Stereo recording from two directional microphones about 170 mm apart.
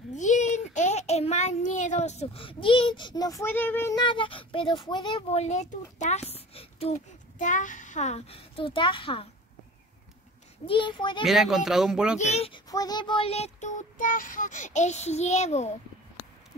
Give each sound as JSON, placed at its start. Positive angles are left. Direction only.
{"t": 0.1, "sound": "a child's voice", "side_deg": 45}
{"t": 5.4, "sound": "a child's voice", "side_deg": 40}
{"t": 10.7, "sound": "a child's voice", "side_deg": 30}
{"t": 11.2, "sound": "speech", "side_deg": 0}
{"t": 12.2, "sound": "child singing", "side_deg": 40}
{"t": 12.6, "sound": "child singing", "side_deg": 20}